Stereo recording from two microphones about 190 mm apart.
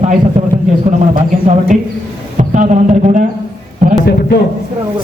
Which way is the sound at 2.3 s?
40° right (ahead or behind).